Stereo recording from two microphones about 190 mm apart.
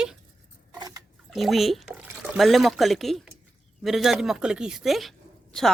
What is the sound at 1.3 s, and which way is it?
Speech, centre (ahead or behind).